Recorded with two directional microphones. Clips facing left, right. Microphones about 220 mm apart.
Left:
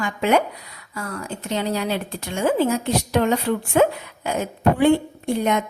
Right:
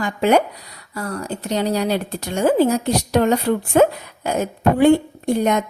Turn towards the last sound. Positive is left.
turn(degrees=-40)  # may be behind; listen again after turning